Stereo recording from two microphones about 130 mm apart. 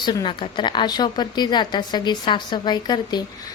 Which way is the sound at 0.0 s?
35° left (ahead or behind).